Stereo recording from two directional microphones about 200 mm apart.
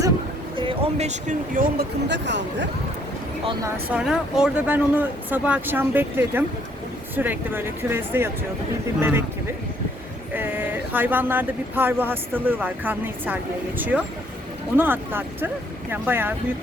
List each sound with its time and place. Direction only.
0.8 s speech: 35° right (ahead or behind)
2.0 s speech: 60° right (ahead or behind)
3.9 s speech: 5° right (ahead or behind)
10.3 s speech: 10° right (ahead or behind)